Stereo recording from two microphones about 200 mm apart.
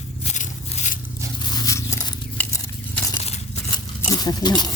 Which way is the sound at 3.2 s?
30° left (ahead or behind).